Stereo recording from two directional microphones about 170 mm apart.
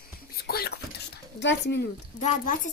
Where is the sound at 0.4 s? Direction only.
65° left (ahead or behind).